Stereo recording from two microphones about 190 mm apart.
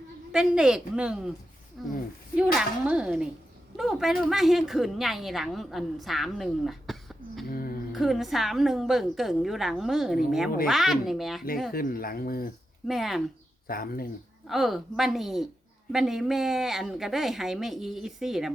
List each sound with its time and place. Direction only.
0.3 s speech: 5° right (ahead or behind)
7.4 s a sound: 50° left (ahead or behind)
7.9 s speech: centre (ahead or behind)
11.7 s speech: 50° left (ahead or behind)
12.9 s speech: centre (ahead or behind)
13.7 s speech: 50° left (ahead or behind)
14.4 s speech: centre (ahead or behind)